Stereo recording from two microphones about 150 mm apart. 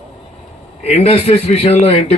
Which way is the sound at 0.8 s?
45° left (ahead or behind).